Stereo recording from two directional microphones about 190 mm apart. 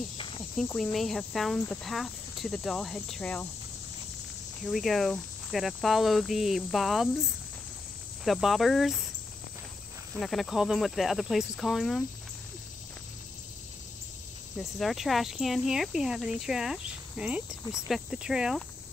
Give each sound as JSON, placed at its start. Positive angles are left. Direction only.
{"t": 0.6, "sound": "speech", "side_deg": 5}
{"t": 4.6, "sound": "speech", "side_deg": 0}
{"t": 8.2, "sound": "speech", "side_deg": 0}
{"t": 10.1, "sound": "speech", "side_deg": 0}
{"t": 14.6, "sound": "speech", "side_deg": 0}